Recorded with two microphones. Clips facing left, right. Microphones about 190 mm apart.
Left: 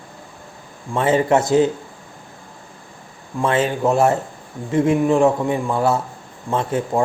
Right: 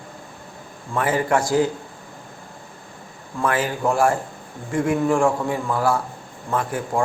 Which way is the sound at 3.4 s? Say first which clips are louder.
Left 4 dB; 25° left (ahead or behind).